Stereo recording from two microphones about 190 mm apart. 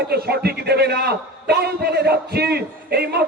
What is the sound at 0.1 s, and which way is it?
A man's voice, 55° right (ahead or behind).